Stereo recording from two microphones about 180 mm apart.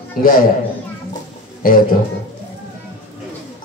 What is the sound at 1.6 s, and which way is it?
Speech, 50° left (ahead or behind).